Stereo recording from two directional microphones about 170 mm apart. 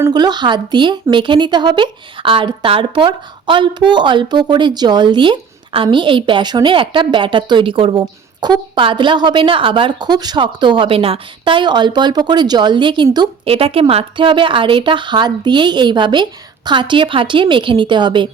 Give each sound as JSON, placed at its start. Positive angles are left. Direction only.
{"t": 0.0, "sound": "speech", "side_deg": -25}